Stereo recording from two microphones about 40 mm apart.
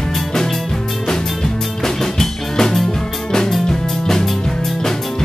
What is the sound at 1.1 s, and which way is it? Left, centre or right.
Drum kit, centre.